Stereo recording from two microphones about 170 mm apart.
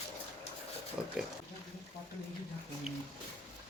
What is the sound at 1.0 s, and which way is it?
Pig, 5° right (ahead or behind).